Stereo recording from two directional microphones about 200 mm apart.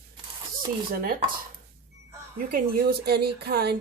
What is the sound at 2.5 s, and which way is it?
Speech, 50° right (ahead or behind).